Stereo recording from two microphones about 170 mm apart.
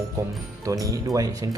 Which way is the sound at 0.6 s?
20° right (ahead or behind).